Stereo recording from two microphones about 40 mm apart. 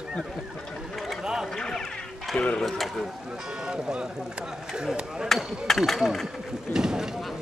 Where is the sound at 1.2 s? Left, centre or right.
Centre.